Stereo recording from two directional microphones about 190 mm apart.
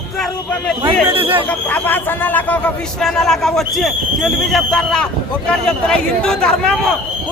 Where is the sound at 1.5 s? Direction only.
10° left (ahead or behind).